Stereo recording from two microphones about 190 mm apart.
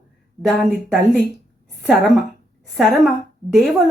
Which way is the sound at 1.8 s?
Centre (ahead or behind).